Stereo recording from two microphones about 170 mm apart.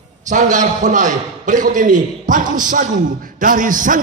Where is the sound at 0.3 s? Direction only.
45° right (ahead or behind).